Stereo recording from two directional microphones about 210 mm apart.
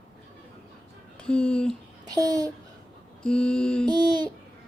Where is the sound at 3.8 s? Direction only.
20° right (ahead or behind).